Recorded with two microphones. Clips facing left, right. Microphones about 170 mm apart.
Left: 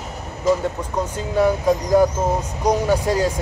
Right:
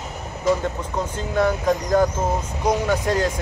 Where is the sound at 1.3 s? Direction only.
10° left (ahead or behind).